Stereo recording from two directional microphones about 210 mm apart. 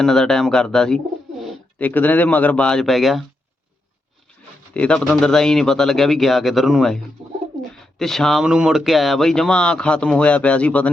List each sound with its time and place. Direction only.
0.0 s speech: centre (ahead or behind)
4.7 s speech: 5° left (ahead or behind)
7.2 s bird: 25° right (ahead or behind)
7.9 s speech: centre (ahead or behind)